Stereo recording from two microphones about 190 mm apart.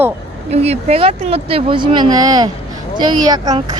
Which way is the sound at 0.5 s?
35° right (ahead or behind).